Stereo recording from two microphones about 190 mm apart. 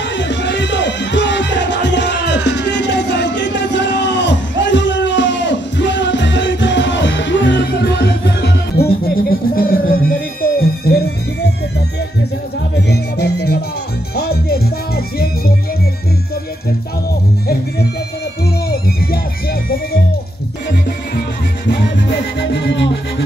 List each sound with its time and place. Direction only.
0.0 s music: 70° left (ahead or behind)
12.7 s music: 60° left (ahead or behind)
18.4 s music: 55° left (ahead or behind)
22.4 s music: 65° left (ahead or behind)